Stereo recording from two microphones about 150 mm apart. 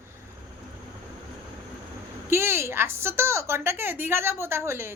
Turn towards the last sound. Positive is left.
turn(degrees=-15)  # may be behind; listen again after turning